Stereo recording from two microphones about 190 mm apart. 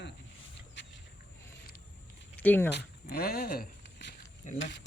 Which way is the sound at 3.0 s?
55° left (ahead or behind).